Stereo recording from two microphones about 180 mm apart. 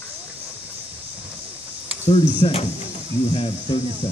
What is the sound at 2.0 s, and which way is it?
Speech, 35° left (ahead or behind).